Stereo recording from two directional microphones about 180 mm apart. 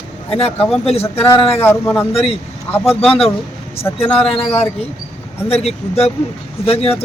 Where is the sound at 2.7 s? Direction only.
10° left (ahead or behind).